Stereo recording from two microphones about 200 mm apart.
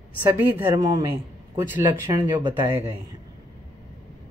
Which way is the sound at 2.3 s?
20° right (ahead or behind).